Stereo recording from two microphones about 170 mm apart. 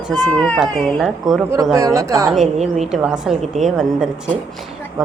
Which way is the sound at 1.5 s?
20° right (ahead or behind).